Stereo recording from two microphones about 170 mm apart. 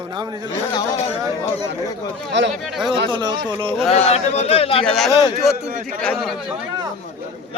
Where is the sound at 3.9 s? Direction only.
40° left (ahead or behind).